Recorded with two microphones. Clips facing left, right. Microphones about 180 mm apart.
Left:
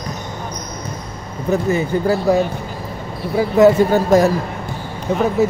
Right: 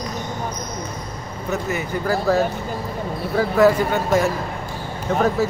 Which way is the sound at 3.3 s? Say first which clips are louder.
Left 4 dB; 20° left (ahead or behind).